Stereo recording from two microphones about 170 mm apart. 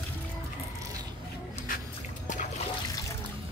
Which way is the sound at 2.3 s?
50° left (ahead or behind).